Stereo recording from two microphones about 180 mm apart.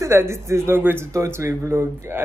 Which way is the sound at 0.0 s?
15° right (ahead or behind).